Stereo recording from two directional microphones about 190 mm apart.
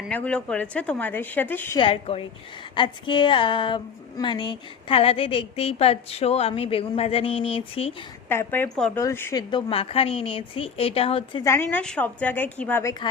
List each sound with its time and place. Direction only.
0.1 s a woman's voice: 5° left (ahead or behind)
1.8 s a woman's voice: 30° left (ahead or behind)
8.3 s a woman's voice: 10° left (ahead or behind)
9.5 s a woman's voice: 25° left (ahead or behind)
11.4 s a woman's voice: 15° left (ahead or behind)